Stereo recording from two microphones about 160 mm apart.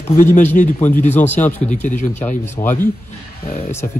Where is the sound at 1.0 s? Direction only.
10° left (ahead or behind).